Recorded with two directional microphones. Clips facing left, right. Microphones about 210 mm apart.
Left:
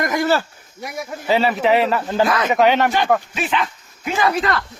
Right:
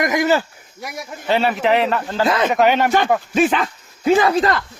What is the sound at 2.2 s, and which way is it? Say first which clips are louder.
Speech: right 3 dB; 25° right (ahead or behind).